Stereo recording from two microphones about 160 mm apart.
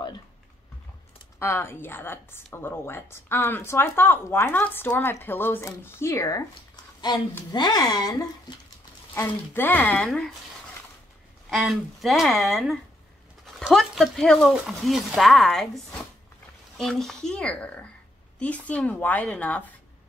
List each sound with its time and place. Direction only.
1.4 s a woman's voice: 15° left (ahead or behind)
9.5 s a woman's voice: 10° left (ahead or behind)
11.5 s a woman's voice: centre (ahead or behind)